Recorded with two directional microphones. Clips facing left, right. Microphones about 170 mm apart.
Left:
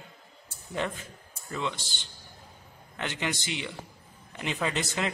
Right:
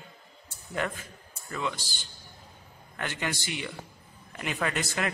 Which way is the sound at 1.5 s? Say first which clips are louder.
Even; 25° left (ahead or behind).